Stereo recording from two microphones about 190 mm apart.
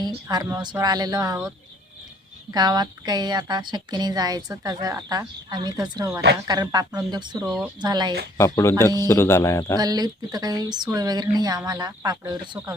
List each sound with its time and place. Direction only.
0.0 s a woman's voice: 20° right (ahead or behind)
2.5 s a woman's voice: 20° right (ahead or behind)
8.4 s speech: 15° left (ahead or behind)
9.7 s a woman's voice: 20° right (ahead or behind)